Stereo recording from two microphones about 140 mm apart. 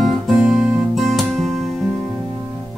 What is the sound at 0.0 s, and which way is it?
Music, 5° right (ahead or behind).